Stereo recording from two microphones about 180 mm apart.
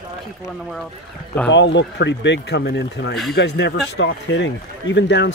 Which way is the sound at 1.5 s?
75° left (ahead or behind).